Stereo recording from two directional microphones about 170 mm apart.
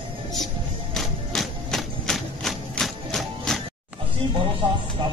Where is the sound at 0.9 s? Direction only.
Centre (ahead or behind).